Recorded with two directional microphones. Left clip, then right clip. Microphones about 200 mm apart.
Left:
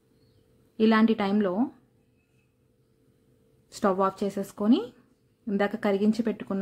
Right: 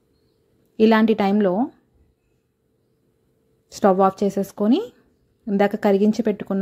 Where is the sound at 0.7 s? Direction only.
30° right (ahead or behind).